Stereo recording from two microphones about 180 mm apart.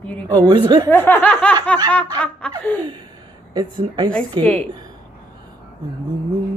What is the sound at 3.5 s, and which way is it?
Speech, 25° right (ahead or behind).